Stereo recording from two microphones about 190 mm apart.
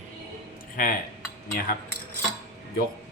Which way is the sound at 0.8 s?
45° left (ahead or behind).